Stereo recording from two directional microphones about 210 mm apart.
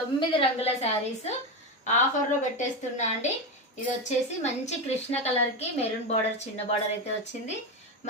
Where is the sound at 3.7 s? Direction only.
35° left (ahead or behind).